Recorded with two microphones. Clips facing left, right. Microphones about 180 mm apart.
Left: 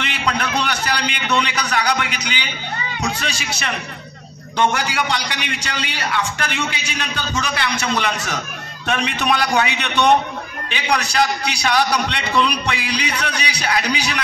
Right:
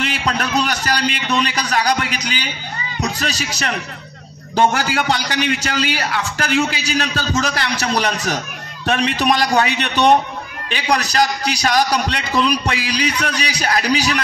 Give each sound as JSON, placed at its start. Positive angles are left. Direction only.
{"t": 0.0, "sound": "a man's voice", "side_deg": -40}